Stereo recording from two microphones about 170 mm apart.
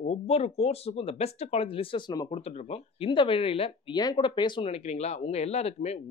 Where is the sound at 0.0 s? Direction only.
40° left (ahead or behind).